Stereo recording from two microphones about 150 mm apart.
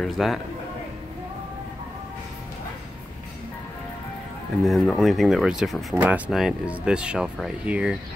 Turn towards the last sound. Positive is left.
turn(degrees=-5)  # may be behind; listen again after turning